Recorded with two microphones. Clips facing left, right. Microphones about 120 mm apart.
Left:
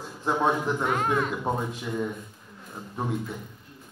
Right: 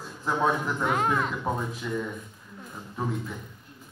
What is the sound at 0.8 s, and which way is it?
Speech, 20° right (ahead or behind).